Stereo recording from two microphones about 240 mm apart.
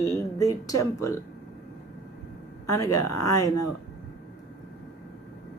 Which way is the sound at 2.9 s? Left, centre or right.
Left.